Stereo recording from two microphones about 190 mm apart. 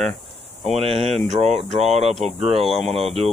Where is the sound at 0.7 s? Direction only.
30° right (ahead or behind).